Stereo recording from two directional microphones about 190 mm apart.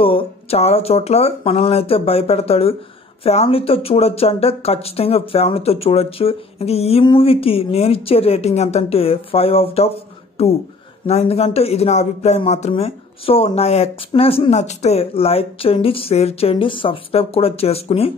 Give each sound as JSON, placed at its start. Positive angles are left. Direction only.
{"t": 0.0, "sound": "speech", "side_deg": 30}